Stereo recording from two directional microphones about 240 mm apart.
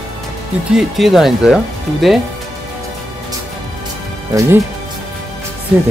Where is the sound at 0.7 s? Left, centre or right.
Centre.